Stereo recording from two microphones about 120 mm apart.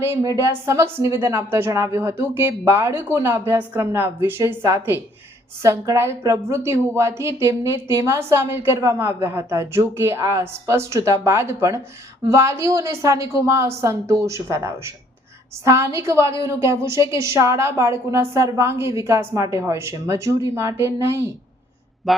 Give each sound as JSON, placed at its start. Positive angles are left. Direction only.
{"t": 0.0, "sound": "a woman's voice", "side_deg": -25}